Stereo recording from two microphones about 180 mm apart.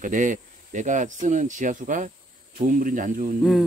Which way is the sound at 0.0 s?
45° right (ahead or behind).